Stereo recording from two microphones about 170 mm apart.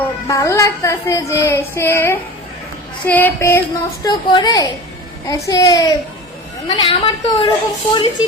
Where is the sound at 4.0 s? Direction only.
25° left (ahead or behind).